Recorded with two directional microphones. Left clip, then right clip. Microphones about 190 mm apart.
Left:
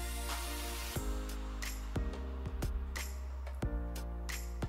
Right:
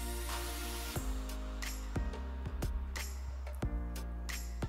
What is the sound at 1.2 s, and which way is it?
Music, centre (ahead or behind).